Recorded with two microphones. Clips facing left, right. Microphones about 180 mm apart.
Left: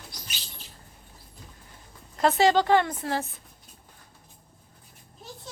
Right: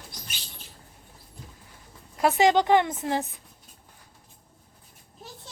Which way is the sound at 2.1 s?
10° right (ahead or behind).